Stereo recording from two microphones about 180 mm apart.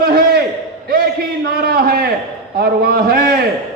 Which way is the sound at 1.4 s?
55° right (ahead or behind).